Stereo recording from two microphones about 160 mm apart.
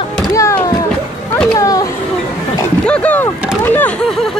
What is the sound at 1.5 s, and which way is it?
Chatter, 20° left (ahead or behind).